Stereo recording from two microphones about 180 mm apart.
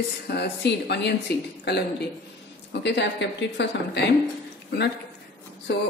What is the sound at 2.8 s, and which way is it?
Speech, 75° left (ahead or behind).